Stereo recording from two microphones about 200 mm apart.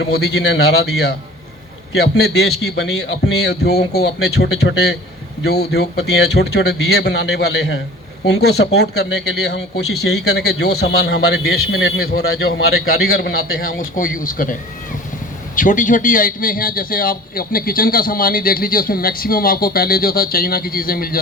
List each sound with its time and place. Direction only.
0.0 s speech: 55° left (ahead or behind)
2.0 s speech: 55° left (ahead or behind)
9.0 s a man's voice: 75° left (ahead or behind); by 21.2 s 45° left (ahead or behind)